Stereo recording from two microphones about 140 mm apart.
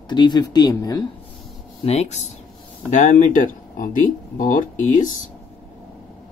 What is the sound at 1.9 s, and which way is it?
Speech, 50° left (ahead or behind).